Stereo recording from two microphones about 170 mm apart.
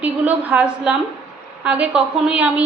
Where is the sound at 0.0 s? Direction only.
10° right (ahead or behind).